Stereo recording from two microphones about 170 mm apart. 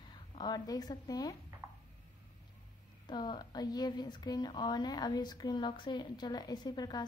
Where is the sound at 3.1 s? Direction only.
25° left (ahead or behind).